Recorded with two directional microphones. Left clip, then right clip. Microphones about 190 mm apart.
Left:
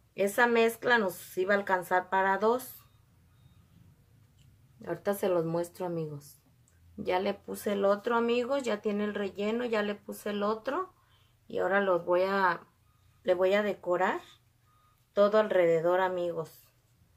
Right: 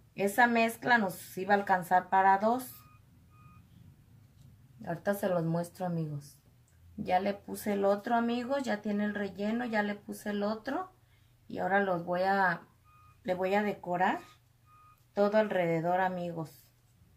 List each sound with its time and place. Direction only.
0.1 s speech: 35° left (ahead or behind)
4.8 s speech: 40° left (ahead or behind)
15.1 s speech: 40° left (ahead or behind)